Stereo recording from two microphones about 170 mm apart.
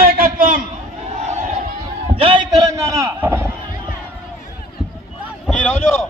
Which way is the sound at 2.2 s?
30° right (ahead or behind).